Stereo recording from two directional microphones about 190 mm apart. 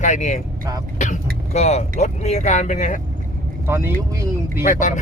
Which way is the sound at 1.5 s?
35° left (ahead or behind).